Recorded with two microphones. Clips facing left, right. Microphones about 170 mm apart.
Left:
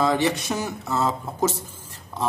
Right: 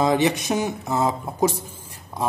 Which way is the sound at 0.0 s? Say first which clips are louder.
Right 2 dB; 15° right (ahead or behind).